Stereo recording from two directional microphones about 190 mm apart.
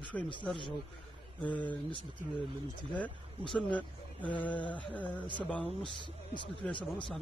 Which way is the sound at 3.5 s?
5° left (ahead or behind).